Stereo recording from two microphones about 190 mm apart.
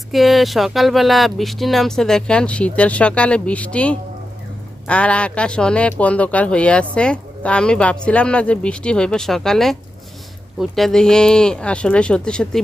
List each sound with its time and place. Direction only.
0.1 s speech: centre (ahead or behind)